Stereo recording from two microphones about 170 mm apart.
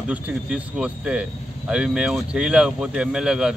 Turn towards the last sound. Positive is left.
turn(degrees=-5)  # may be behind; listen again after turning